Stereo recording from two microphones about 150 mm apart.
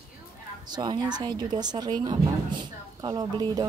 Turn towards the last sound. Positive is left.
turn(degrees=-25)  # may be behind; listen again after turning